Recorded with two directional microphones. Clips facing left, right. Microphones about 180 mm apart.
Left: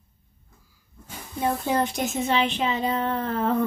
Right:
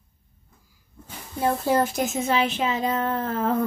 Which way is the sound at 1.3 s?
5° right (ahead or behind).